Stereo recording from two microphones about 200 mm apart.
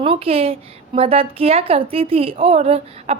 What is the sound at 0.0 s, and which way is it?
A woman's voice, 30° right (ahead or behind).